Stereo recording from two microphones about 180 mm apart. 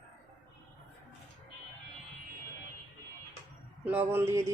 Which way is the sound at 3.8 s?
10° right (ahead or behind).